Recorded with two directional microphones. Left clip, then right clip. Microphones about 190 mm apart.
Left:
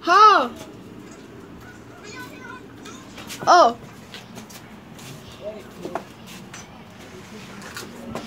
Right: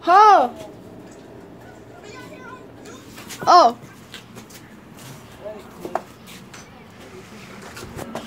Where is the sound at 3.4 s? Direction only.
10° right (ahead or behind).